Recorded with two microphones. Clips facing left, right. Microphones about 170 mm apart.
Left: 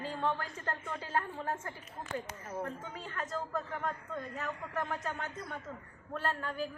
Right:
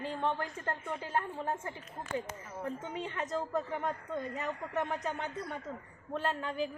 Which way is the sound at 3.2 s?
20° right (ahead or behind).